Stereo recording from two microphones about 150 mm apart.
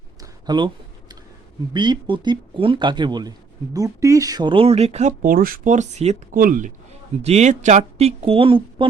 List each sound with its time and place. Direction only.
0.2 s a sound: 30° right (ahead or behind)
1.7 s speech: 30° right (ahead or behind); by 5.1 s 45° right (ahead or behind)
5.2 s speech: 70° right (ahead or behind); by 6.1 s 50° right (ahead or behind)
6.3 s speech: 65° right (ahead or behind)
7.2 s speech: 45° right (ahead or behind)